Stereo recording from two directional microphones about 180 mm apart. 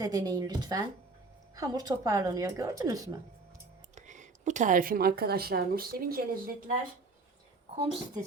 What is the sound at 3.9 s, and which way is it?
A woman's voice, 40° right (ahead or behind).